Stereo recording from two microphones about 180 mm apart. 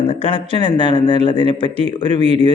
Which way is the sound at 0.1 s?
30° left (ahead or behind).